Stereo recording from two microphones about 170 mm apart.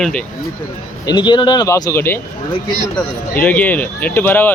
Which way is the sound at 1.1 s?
25° left (ahead or behind).